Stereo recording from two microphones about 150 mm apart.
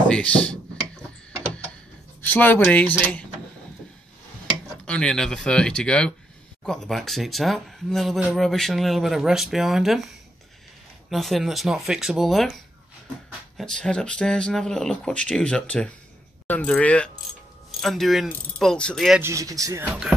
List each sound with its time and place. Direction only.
0.1 s speech: 5° left (ahead or behind)
2.2 s speech: 15° left (ahead or behind)
4.8 s speech: 5° left (ahead or behind)
11.1 s speech: centre (ahead or behind)
13.6 s speech: 5° left (ahead or behind)
19.2 s speech: 20° right (ahead or behind)